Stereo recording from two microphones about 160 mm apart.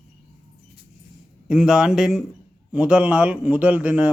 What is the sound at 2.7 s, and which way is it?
Mantra, 10° right (ahead or behind).